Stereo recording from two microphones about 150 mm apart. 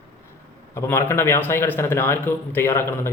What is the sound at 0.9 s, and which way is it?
A man's voice, 15° left (ahead or behind).